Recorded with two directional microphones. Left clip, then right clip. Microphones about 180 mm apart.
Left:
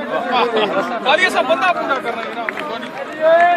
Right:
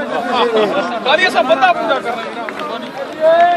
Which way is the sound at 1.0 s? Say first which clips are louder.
Right 2 dB; 55° left (ahead or behind).